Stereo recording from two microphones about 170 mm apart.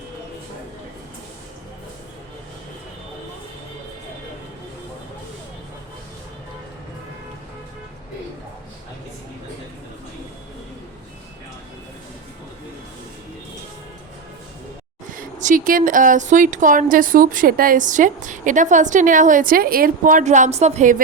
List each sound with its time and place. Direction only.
15.1 s speech: 50° right (ahead or behind)